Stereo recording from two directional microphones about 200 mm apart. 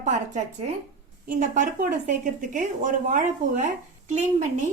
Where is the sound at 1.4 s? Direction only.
40° right (ahead or behind).